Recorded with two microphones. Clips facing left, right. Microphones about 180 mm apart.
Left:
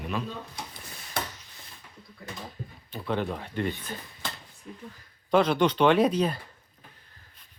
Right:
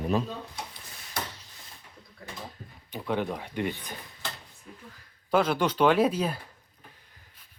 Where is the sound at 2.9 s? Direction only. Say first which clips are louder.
Even; 15° right (ahead or behind).